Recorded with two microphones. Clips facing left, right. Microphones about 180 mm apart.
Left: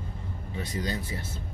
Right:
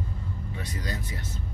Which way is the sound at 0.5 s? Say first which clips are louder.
Left 5 dB; 25° left (ahead or behind).